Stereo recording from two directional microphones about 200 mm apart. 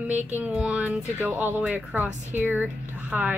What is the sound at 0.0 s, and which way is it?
Speech, 10° right (ahead or behind).